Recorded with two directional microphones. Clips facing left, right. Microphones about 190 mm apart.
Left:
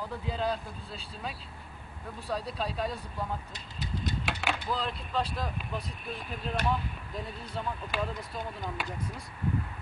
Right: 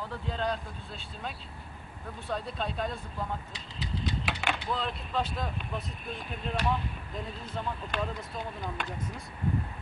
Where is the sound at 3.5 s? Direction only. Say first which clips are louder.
Right 1 dB; 50° left (ahead or behind).